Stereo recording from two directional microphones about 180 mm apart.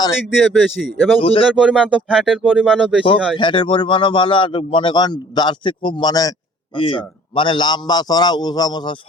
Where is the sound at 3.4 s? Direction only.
25° left (ahead or behind).